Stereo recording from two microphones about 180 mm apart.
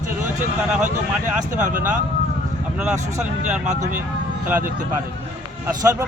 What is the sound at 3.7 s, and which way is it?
Speech, 45° right (ahead or behind).